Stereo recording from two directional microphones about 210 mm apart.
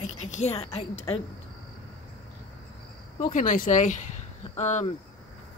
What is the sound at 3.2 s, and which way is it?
Speech, 40° left (ahead or behind).